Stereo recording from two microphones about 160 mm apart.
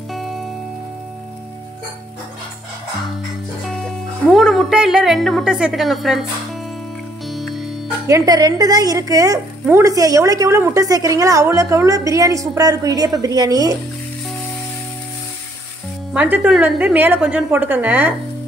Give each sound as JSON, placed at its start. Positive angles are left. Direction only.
{"t": 0.1, "sound": "music", "side_deg": 0}
{"t": 3.6, "sound": "speech", "side_deg": 0}
{"t": 7.2, "sound": "music", "side_deg": 0}
{"t": 8.1, "sound": "a woman's voice", "side_deg": -25}
{"t": 16.1, "sound": "a woman's voice", "side_deg": -10}